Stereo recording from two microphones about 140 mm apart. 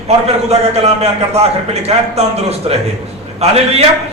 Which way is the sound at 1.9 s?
50° right (ahead or behind).